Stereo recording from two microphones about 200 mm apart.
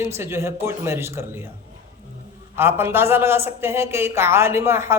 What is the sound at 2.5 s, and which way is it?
Speech, 10° right (ahead or behind).